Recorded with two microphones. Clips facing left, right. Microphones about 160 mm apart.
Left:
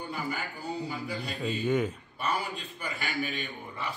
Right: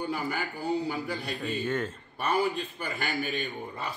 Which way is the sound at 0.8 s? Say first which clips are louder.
Right 3 dB; 65° right (ahead or behind).